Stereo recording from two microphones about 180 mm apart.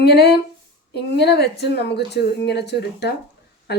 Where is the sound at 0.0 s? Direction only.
60° left (ahead or behind).